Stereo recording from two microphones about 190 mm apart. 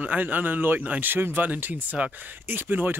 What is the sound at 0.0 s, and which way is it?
Speech, 10° right (ahead or behind).